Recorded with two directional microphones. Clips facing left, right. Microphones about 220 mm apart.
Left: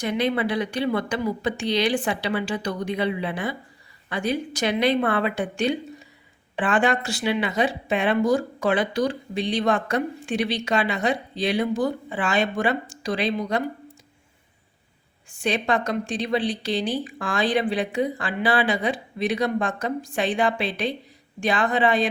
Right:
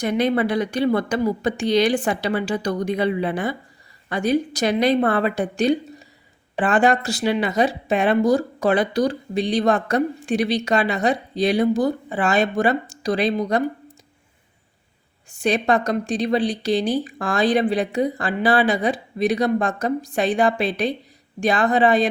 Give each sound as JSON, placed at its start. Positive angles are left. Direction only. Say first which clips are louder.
{"t": 0.0, "sound": "speech", "louder": "right 4 dB", "side_deg": -45}
{"t": 15.4, "sound": "speech", "louder": "right 4 dB", "side_deg": -40}